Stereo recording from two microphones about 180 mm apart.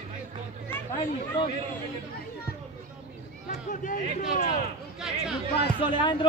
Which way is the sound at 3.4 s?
45° left (ahead or behind).